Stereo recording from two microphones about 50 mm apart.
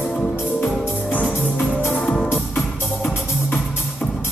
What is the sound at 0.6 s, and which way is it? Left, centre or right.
Music, left.